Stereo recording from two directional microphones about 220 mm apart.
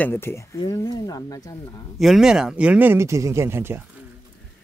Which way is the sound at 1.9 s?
Centre (ahead or behind).